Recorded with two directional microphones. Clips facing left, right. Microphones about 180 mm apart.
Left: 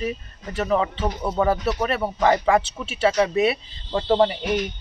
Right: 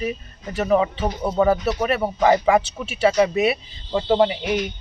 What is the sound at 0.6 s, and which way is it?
Speech, 5° right (ahead or behind).